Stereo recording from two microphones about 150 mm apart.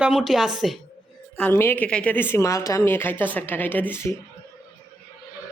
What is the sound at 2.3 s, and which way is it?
A woman's voice, 20° left (ahead or behind).